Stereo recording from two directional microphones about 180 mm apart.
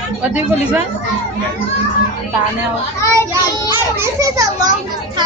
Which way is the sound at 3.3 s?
15° right (ahead or behind).